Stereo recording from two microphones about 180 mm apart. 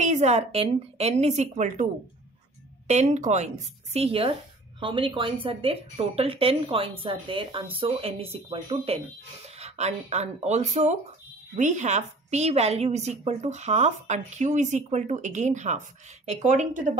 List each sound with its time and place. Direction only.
0.0 s a woman's voice: 40° right (ahead or behind)
2.9 s a woman's voice: 40° right (ahead or behind)